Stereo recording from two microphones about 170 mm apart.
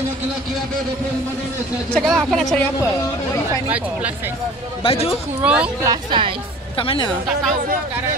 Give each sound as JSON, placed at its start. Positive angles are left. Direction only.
{"t": 2.0, "sound": "speech", "side_deg": 0}
{"t": 3.6, "sound": "speech", "side_deg": -10}
{"t": 4.8, "sound": "speech", "side_deg": 35}
{"t": 5.4, "sound": "speech", "side_deg": -5}
{"t": 5.9, "sound": "a woman's voice", "side_deg": -30}
{"t": 6.8, "sound": "speech", "side_deg": 30}